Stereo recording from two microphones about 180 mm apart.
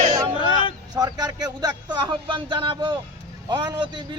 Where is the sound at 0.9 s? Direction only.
20° right (ahead or behind).